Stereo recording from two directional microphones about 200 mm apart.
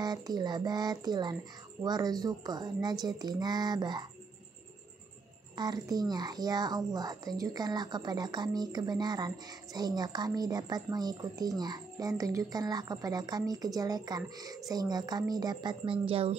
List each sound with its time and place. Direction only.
0.0 s speech: 20° right (ahead or behind)
5.6 s speech: 20° right (ahead or behind)